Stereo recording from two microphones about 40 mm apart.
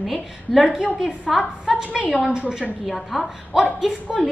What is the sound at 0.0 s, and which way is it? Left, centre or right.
A woman's voice, centre.